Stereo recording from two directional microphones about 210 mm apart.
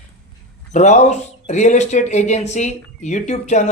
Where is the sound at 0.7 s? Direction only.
35° left (ahead or behind).